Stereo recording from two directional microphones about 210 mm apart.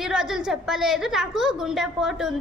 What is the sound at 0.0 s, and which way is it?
A woman's voice, 5° right (ahead or behind).